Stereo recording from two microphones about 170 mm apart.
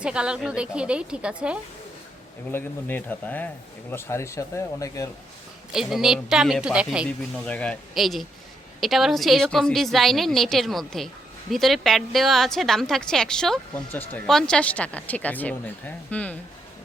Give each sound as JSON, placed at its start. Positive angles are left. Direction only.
{"t": 0.0, "sound": "a woman's voice", "side_deg": -5}
{"t": 2.5, "sound": "speech", "side_deg": 10}
{"t": 5.7, "sound": "a woman's voice", "side_deg": 0}
{"t": 7.4, "sound": "a woman's voice", "side_deg": 5}